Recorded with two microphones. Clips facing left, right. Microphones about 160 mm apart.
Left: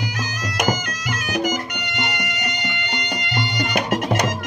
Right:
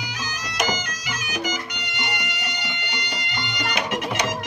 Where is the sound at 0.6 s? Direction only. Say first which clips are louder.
Left 3 dB; 55° left (ahead or behind).